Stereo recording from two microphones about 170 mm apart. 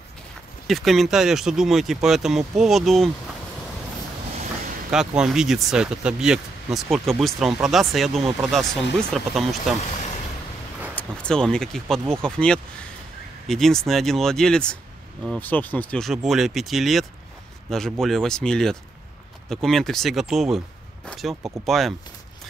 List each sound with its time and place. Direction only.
0.7 s speech: centre (ahead or behind)
4.9 s speech: 5° right (ahead or behind)
9.8 s vehicle: 45° left (ahead or behind)
11.0 s speech: 5° left (ahead or behind)